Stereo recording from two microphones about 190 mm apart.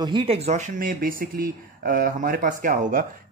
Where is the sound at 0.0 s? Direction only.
25° right (ahead or behind).